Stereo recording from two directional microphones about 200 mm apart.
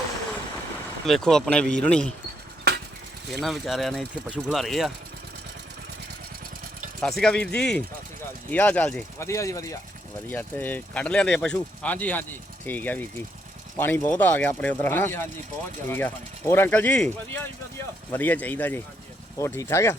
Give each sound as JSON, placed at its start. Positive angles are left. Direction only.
{"t": 1.0, "sound": "speech", "side_deg": 0}
{"t": 2.7, "sound": "a sound", "side_deg": -55}
{"t": 3.4, "sound": "speech", "side_deg": 0}
{"t": 7.0, "sound": "speech", "side_deg": 0}